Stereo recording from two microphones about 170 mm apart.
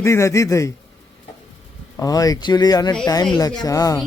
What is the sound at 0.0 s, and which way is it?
Speech, 15° left (ahead or behind).